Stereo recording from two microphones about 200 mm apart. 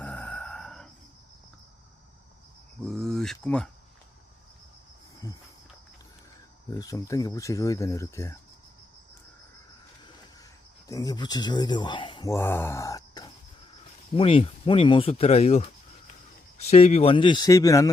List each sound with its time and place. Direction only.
0.0 s a sound: 10° left (ahead or behind)
2.8 s speech: centre (ahead or behind)
5.2 s speech: 15° left (ahead or behind)
6.7 s speech: 15° left (ahead or behind)
10.8 s speech: 15° left (ahead or behind)
14.2 s speech: 30° left (ahead or behind)